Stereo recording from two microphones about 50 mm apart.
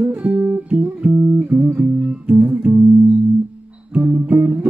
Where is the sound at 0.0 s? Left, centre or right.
Right.